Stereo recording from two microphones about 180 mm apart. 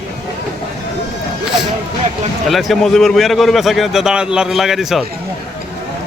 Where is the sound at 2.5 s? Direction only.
Centre (ahead or behind).